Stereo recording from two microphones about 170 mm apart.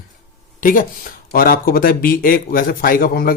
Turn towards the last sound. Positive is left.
turn(degrees=60)  # may be behind; listen again after turning